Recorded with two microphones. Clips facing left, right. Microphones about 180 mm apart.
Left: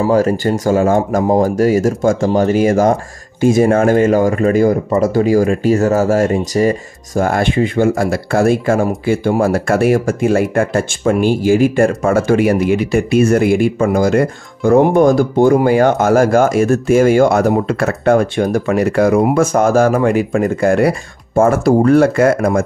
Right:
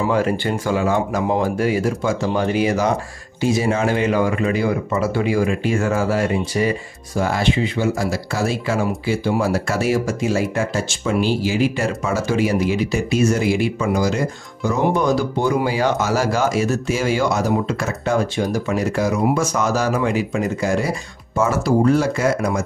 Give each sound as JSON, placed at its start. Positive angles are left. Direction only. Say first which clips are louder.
{"t": 0.0, "sound": "speech", "louder": "left 6 dB", "side_deg": 40}